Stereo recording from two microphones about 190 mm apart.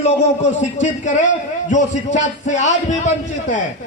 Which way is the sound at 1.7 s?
40° left (ahead or behind).